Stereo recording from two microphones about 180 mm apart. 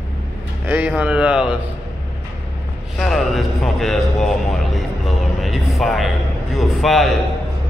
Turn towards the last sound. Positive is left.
turn(degrees=0)  # may be behind; listen again after turning